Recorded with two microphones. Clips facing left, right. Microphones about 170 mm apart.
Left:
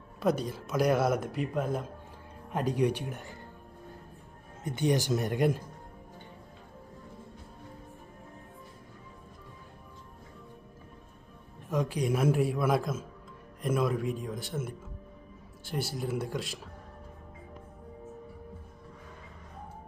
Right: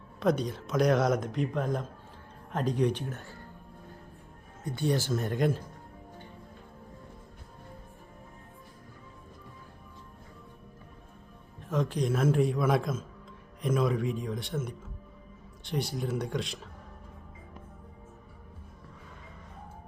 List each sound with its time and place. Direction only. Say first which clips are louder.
0.2 s speech: right 1 dB; 5° left (ahead or behind)
4.6 s speech: left 1 dB; 20° left (ahead or behind)
11.7 s a man's voice: even; 10° left (ahead or behind)